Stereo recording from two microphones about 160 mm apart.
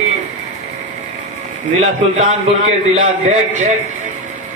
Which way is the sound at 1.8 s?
50° right (ahead or behind).